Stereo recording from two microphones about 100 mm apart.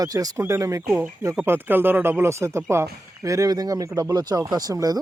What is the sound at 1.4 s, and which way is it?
Speech, 20° right (ahead or behind).